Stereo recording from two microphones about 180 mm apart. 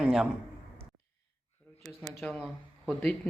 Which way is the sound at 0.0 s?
5° right (ahead or behind).